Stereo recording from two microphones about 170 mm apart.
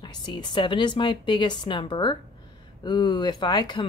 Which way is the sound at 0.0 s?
25° left (ahead or behind).